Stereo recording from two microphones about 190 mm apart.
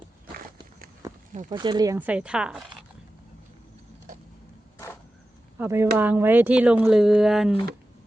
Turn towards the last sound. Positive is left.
turn(degrees=0)  # may be behind; listen again after turning